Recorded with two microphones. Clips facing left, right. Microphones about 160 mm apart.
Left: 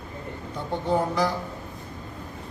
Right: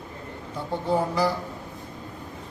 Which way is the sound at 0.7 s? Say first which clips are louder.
Even; 5° right (ahead or behind).